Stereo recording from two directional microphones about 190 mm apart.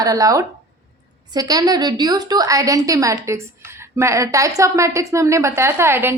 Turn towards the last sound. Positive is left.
turn(degrees=-15)  # may be behind; listen again after turning